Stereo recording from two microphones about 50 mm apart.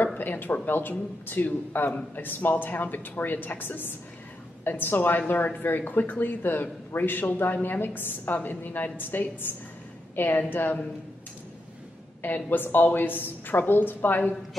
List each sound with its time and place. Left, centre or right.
0.2 s a woman's voice: left
12.2 s speech: left